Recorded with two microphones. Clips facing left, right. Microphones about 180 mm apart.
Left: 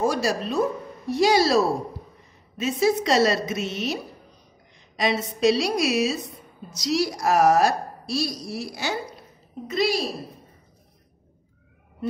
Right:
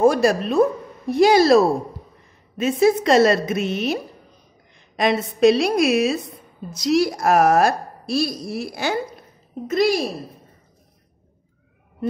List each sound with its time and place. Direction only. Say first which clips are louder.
0.0 s a woman's voice: right 7 dB; 55° right (ahead or behind)